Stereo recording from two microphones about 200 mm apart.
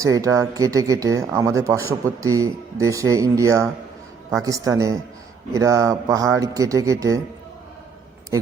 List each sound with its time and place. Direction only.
0.0 s speech: 15° right (ahead or behind)